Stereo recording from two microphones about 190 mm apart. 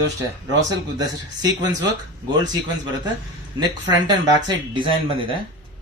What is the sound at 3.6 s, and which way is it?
Speech, 20° right (ahead or behind).